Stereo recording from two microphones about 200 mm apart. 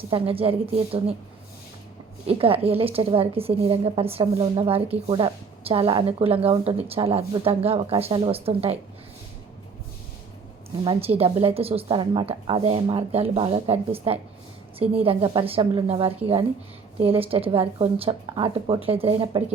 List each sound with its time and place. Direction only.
0.1 s a woman's voice: 30° right (ahead or behind)
2.2 s a woman's voice: 30° right (ahead or behind)
11.2 s a woman's voice: 30° right (ahead or behind)